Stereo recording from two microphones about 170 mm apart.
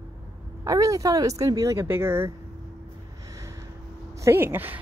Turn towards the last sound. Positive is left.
turn(degrees=-10)  # may be behind; listen again after turning